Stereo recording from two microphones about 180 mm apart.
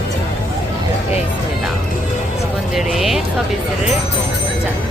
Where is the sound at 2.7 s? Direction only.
Centre (ahead or behind).